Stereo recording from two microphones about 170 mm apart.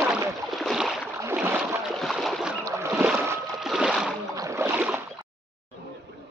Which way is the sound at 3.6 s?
5° right (ahead or behind).